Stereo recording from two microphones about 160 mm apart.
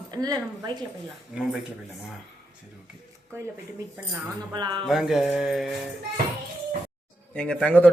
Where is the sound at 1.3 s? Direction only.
5° right (ahead or behind).